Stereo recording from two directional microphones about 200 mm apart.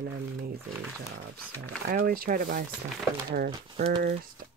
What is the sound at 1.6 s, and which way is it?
Speech, 45° right (ahead or behind).